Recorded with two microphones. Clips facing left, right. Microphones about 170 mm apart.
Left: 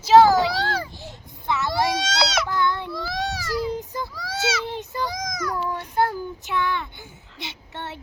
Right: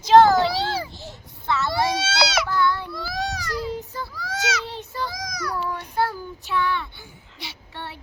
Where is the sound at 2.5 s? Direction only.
20° left (ahead or behind).